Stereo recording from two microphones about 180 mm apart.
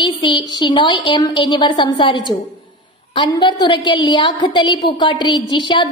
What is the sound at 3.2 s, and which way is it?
A woman's voice, 25° left (ahead or behind).